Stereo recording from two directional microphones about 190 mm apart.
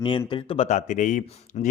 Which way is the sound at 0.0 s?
25° left (ahead or behind).